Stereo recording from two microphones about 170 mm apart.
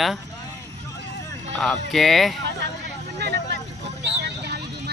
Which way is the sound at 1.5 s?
Centre (ahead or behind).